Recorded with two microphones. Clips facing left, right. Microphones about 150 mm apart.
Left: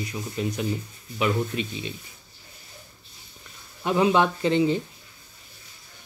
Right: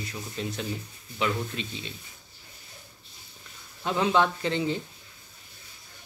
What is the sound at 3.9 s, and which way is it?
Speech, 15° left (ahead or behind).